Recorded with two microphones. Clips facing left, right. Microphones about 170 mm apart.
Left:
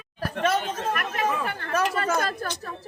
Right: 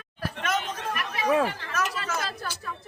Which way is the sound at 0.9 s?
55° left (ahead or behind).